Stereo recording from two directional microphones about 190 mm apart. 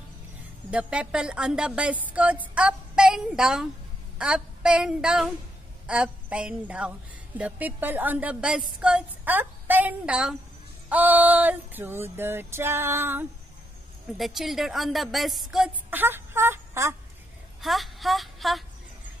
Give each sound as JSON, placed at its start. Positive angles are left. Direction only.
{"t": 0.7, "sound": "a woman's voice", "side_deg": -5}
{"t": 4.2, "sound": "a sound", "side_deg": -5}
{"t": 7.3, "sound": "a woman's voice", "side_deg": -10}
{"t": 14.1, "sound": "speech", "side_deg": 0}
{"t": 17.6, "sound": "speech", "side_deg": 0}